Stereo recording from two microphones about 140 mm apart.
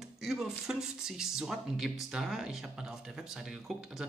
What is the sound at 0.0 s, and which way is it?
Speech, 5° right (ahead or behind).